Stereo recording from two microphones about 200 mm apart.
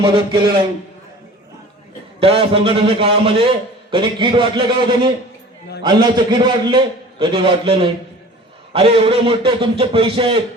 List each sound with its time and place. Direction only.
0.0 s a man's voice: 25° right (ahead or behind)
2.2 s a man's voice: 30° right (ahead or behind)